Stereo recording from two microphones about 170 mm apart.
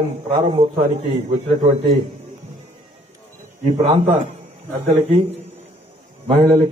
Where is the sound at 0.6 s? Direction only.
30° right (ahead or behind).